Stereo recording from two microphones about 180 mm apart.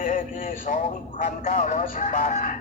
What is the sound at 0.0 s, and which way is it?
A man's voice, 45° left (ahead or behind).